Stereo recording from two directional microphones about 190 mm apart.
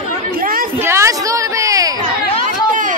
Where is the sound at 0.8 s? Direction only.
15° right (ahead or behind).